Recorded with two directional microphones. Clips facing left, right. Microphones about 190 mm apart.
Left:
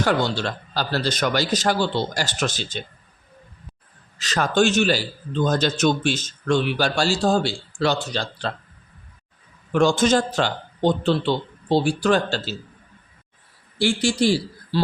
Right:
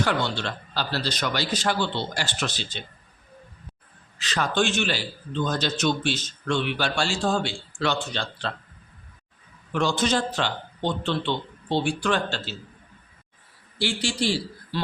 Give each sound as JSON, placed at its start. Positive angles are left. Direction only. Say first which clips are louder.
{"t": 0.0, "sound": "speech", "louder": "left 4 dB", "side_deg": 40}
{"t": 4.2, "sound": "a man's voice", "louder": "left 5 dB", "side_deg": 45}
{"t": 9.7, "sound": "a man's voice", "louder": "left 6 dB", "side_deg": 45}
{"t": 13.7, "sound": "speech", "louder": "left 6 dB", "side_deg": 45}